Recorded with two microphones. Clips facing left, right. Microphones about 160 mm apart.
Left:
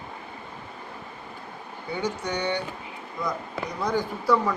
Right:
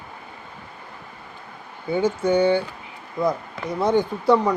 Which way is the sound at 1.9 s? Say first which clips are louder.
Right 9 dB; 25° right (ahead or behind).